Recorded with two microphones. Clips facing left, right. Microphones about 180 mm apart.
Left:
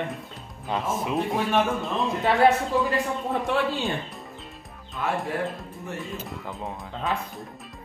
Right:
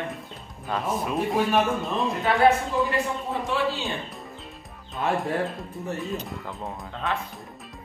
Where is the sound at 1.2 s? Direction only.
Centre (ahead or behind).